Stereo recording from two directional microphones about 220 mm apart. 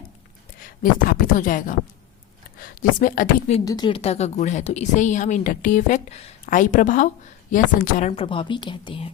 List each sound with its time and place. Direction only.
0.6 s speech: 40° left (ahead or behind)
3.6 s a woman's voice: 20° left (ahead or behind)